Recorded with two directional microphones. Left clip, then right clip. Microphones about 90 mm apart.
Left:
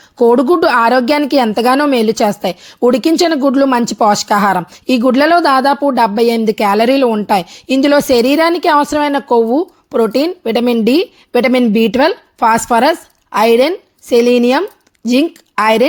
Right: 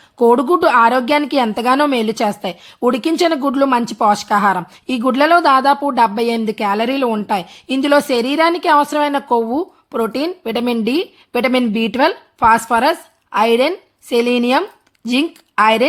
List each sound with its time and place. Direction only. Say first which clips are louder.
0.2 s a woman's voice: left 3 dB; 40° left (ahead or behind)
15.5 s speech: left 2 dB; 40° left (ahead or behind)